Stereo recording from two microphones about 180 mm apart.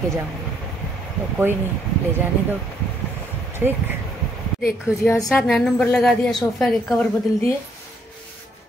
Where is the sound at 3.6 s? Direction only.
10° right (ahead or behind).